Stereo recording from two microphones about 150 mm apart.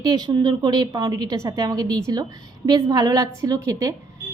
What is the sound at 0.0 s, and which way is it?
Speech, 25° right (ahead or behind).